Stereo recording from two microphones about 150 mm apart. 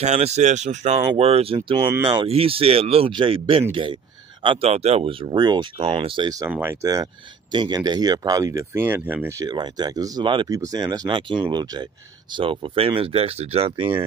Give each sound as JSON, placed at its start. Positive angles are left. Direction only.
{"t": 0.0, "sound": "speech", "side_deg": -45}
{"t": 1.8, "sound": "speech", "side_deg": -15}
{"t": 2.2, "sound": "speech", "side_deg": -40}
{"t": 6.5, "sound": "speech", "side_deg": -15}
{"t": 9.5, "sound": "speech", "side_deg": -25}